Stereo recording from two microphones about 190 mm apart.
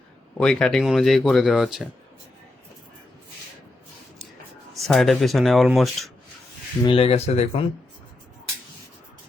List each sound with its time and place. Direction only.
0.3 s speech: 5° left (ahead or behind)
4.7 s speech: centre (ahead or behind)
6.8 s speech: 30° left (ahead or behind)